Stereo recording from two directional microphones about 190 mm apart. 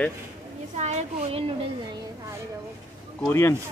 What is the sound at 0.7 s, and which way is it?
Speech, 35° right (ahead or behind).